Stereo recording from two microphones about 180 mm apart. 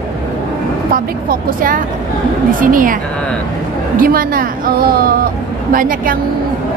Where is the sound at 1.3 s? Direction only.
50° right (ahead or behind).